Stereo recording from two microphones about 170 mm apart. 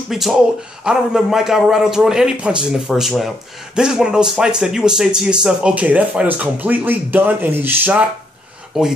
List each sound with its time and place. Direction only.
0.1 s a man's voice: centre (ahead or behind)